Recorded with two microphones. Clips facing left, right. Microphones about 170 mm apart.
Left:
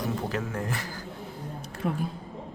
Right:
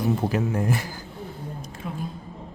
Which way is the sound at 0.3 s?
10° right (ahead or behind).